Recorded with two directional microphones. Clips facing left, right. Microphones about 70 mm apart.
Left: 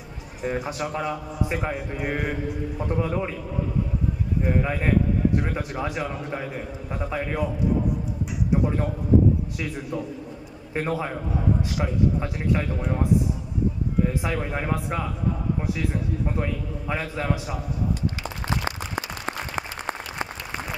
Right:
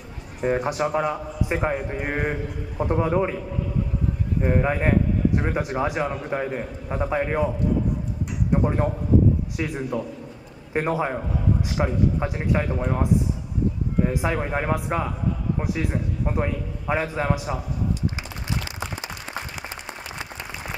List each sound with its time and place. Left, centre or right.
0.7 s a man's voice: right
2.8 s a man's voice: right
4.4 s a man's voice: right
8.6 s a man's voice: right
14.0 s a man's voice: right
19.2 s applause: left